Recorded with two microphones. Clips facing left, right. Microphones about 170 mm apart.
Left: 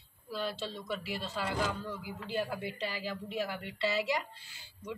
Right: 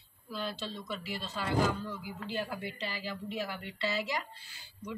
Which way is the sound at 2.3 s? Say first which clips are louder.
Left 3 dB; 10° left (ahead or behind).